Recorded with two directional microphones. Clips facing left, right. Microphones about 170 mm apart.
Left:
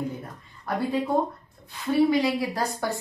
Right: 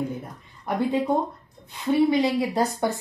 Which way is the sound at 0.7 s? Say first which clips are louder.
Right 3 dB; 20° right (ahead or behind).